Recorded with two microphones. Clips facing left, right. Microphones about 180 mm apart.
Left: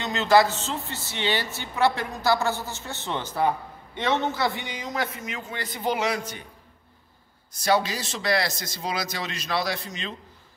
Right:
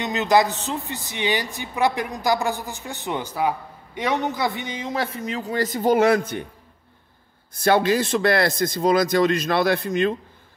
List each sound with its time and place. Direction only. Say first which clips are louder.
0.0 s a woman's voice: right 1 dB; 20° right (ahead or behind); by 6.4 s 55° right (ahead or behind)
7.5 s a man's voice: right 6 dB; 55° right (ahead or behind)